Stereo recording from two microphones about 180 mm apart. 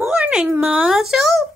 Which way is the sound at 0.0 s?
5° right (ahead or behind).